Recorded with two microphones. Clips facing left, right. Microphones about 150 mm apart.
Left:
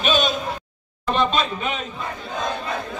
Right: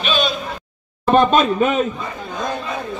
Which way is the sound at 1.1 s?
50° right (ahead or behind).